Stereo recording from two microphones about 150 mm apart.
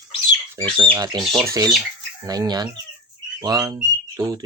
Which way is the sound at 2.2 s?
25° right (ahead or behind).